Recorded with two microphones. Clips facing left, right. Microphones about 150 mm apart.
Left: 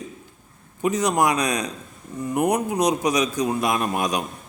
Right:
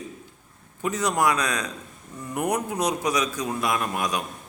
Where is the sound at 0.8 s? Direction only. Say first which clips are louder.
Left 4 dB; 15° left (ahead or behind).